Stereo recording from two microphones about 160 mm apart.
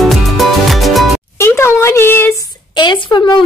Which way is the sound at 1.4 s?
15° left (ahead or behind).